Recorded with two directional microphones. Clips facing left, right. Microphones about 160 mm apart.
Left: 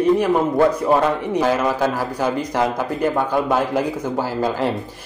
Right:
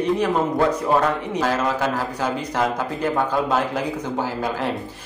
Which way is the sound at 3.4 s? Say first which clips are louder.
Left 3 dB; 10° left (ahead or behind).